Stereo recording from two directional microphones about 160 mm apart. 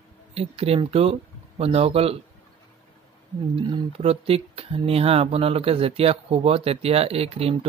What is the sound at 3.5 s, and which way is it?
Speech, 35° right (ahead or behind).